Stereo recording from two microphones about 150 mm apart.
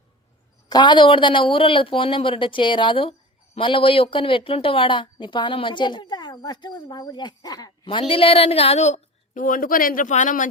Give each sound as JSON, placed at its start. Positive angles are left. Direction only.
{"t": 0.7, "sound": "speech", "side_deg": 30}